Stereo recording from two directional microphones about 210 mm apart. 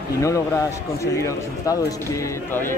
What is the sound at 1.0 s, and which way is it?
Speech, 15° left (ahead or behind).